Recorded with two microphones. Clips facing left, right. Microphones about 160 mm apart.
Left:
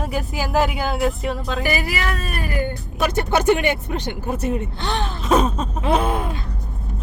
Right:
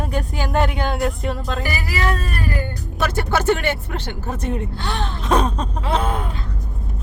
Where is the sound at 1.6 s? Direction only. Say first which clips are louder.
Left 1 dB; 20° left (ahead or behind).